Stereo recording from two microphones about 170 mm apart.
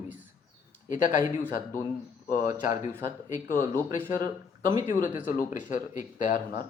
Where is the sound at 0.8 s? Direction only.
45° left (ahead or behind).